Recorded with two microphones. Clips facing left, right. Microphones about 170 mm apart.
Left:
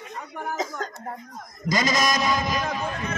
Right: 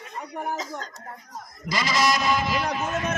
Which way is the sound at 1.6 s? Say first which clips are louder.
Left 1 dB; 45° left (ahead or behind).